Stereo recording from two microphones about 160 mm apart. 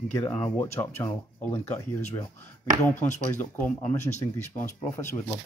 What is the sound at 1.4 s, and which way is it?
Speech, 10° left (ahead or behind).